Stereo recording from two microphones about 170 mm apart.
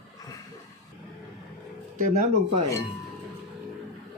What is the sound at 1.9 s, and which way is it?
Speech, 45° right (ahead or behind).